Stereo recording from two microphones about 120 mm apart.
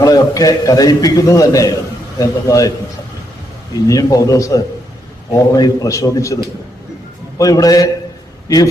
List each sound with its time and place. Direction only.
0.0 s a man's voice: 30° left (ahead or behind)
3.8 s a man's voice: 30° left (ahead or behind)